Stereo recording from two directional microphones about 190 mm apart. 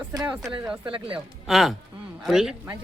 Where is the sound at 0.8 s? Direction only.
25° right (ahead or behind).